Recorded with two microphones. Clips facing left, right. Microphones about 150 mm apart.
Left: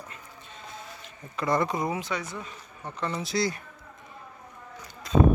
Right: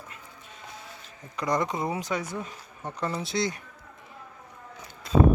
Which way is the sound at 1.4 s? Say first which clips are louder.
Left 1 dB; 15° right (ahead or behind).